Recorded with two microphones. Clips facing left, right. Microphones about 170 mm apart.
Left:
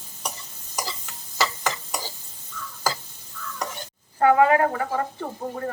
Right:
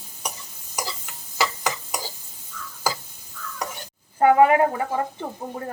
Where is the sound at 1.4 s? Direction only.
10° right (ahead or behind).